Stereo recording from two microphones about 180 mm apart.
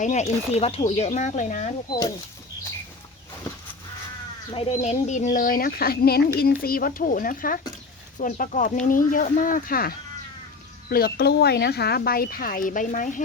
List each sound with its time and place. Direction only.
0.0 s speech: 40° left (ahead or behind)
1.9 s speech: 20° left (ahead or behind)
4.5 s speech: 35° left (ahead or behind)
5.3 s speech: 50° left (ahead or behind)